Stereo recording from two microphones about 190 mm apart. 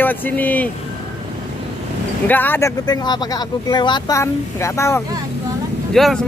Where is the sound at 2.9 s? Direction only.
20° left (ahead or behind).